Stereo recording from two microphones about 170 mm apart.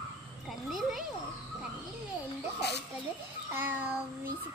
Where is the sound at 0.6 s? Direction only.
Centre (ahead or behind).